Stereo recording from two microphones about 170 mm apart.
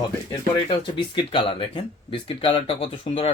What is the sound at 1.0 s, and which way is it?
Speech, 30° left (ahead or behind).